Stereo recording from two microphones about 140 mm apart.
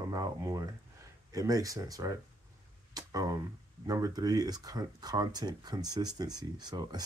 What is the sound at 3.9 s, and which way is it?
Speech, 25° right (ahead or behind).